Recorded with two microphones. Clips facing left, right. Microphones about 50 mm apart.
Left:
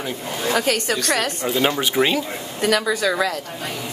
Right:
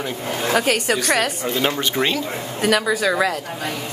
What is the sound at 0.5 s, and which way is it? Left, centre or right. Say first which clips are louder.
A woman's voice: right 1 dB; centre.